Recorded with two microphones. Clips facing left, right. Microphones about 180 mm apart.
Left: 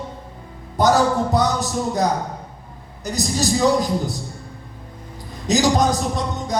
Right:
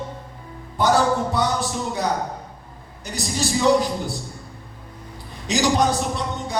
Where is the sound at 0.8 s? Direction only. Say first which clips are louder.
Left 2 dB; 40° left (ahead or behind).